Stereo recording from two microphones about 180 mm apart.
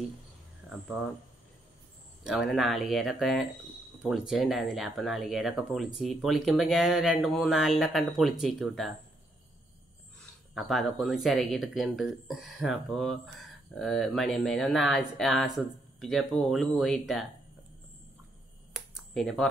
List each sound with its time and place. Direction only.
2.2 s speech: centre (ahead or behind)
10.5 s speech: centre (ahead or behind)
18.7 s a sound: centre (ahead or behind)